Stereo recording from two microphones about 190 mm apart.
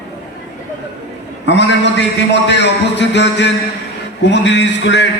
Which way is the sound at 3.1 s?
65° left (ahead or behind).